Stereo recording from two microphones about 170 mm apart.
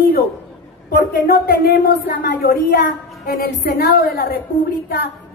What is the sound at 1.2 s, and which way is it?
Speech, 60° left (ahead or behind).